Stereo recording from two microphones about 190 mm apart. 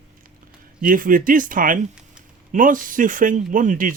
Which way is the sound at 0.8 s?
45° right (ahead or behind).